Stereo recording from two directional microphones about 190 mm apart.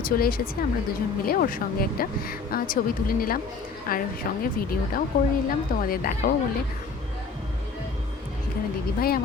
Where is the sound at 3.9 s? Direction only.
50° left (ahead or behind).